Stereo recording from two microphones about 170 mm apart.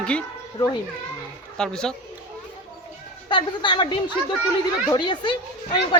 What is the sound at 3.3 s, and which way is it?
A woman's voice, 30° left (ahead or behind).